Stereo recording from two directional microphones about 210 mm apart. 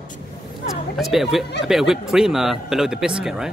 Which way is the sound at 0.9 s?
Centre (ahead or behind).